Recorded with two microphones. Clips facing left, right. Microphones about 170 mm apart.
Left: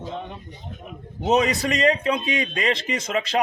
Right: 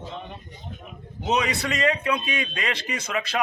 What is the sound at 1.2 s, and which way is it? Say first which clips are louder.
Speech: left 5 dB; 45° left (ahead or behind).